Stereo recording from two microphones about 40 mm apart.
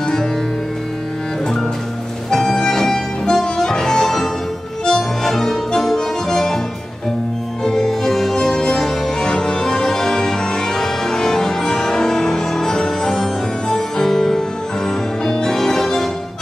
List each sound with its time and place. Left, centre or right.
0.0 s music: centre
2.3 s harmonica: centre
4.8 s music: centre
7.6 s music: centre